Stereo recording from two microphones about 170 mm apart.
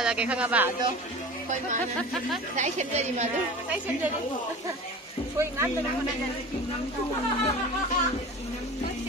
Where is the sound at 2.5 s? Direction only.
45° right (ahead or behind).